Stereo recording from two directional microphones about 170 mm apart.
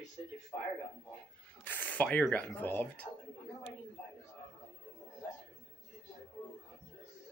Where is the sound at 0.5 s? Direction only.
20° left (ahead or behind).